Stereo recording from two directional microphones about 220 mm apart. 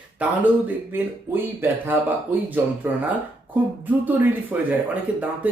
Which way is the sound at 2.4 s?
10° right (ahead or behind).